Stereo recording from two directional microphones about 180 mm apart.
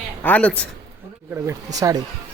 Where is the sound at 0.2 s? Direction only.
10° left (ahead or behind).